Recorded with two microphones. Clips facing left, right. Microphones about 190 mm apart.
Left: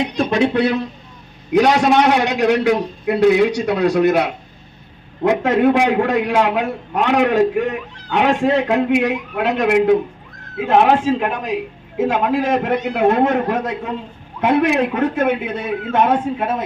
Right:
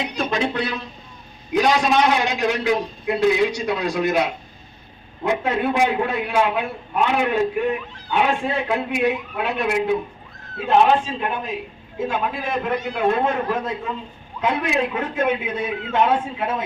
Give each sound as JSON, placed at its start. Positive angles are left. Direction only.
{"t": 0.3, "sound": "a man's voice", "side_deg": 65}
{"t": 5.2, "sound": "a man's voice", "side_deg": 80}
{"t": 14.9, "sound": "speech", "side_deg": 45}